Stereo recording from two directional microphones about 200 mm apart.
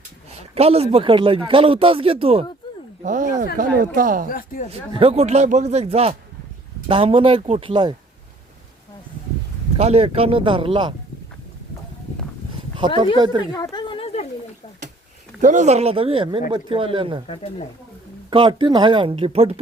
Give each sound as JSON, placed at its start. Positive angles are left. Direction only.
{"t": 0.3, "sound": "a man's voice", "side_deg": -30}
{"t": 3.0, "sound": "speech", "side_deg": -40}
{"t": 4.3, "sound": "speech", "side_deg": 45}
{"t": 4.7, "sound": "a man's voice", "side_deg": -30}
{"t": 9.7, "sound": "a man's voice", "side_deg": -30}
{"t": 13.1, "sound": "a man's voice", "side_deg": -20}
{"t": 13.6, "sound": "a sound", "side_deg": 20}
{"t": 15.4, "sound": "a man's voice", "side_deg": -40}
{"t": 17.2, "sound": "speech", "side_deg": 30}
{"t": 18.3, "sound": "a man's voice", "side_deg": -25}